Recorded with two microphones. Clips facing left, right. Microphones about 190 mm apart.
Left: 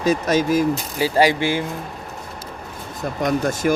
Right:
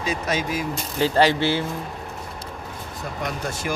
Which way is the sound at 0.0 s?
45° left (ahead or behind).